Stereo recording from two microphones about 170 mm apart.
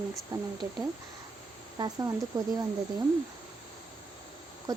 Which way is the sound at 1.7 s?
20° right (ahead or behind).